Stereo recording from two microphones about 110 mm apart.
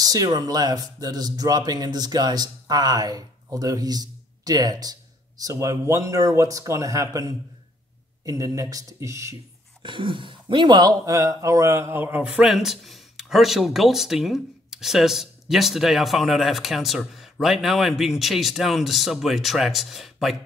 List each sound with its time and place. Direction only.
0.0 s speech: 35° right (ahead or behind)
9.8 s a man's voice: 50° right (ahead or behind); by 20.3 s centre (ahead or behind)